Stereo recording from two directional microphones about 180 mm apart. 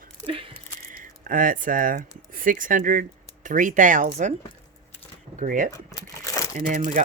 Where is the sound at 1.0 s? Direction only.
50° right (ahead or behind).